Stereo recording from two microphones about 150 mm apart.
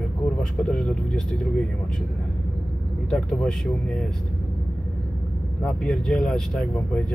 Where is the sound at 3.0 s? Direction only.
5° left (ahead or behind).